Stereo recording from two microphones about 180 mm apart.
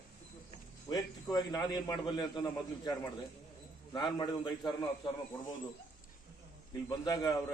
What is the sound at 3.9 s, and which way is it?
A man's voice, 25° left (ahead or behind).